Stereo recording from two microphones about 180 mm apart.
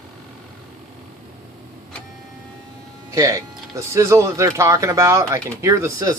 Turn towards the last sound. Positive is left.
turn(degrees=-15)  # may be behind; listen again after turning